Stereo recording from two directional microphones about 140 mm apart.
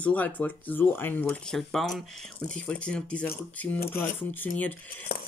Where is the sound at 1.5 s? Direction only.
Centre (ahead or behind).